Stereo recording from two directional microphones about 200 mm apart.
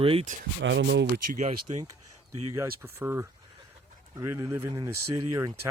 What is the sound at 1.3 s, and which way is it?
Speech, 35° right (ahead or behind).